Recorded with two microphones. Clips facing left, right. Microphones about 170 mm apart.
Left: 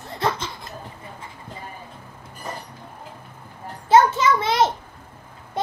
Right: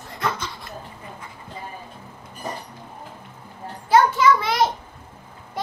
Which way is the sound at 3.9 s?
25° left (ahead or behind).